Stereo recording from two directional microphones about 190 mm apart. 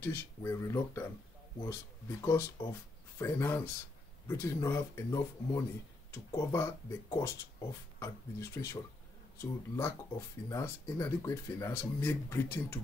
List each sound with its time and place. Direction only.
0.0 s speech: 15° left (ahead or behind)